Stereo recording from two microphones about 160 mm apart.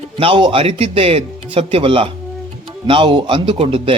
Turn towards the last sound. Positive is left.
turn(degrees=-35)  # may be behind; listen again after turning